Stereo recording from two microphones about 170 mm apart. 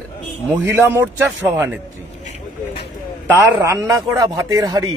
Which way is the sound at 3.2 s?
20° right (ahead or behind).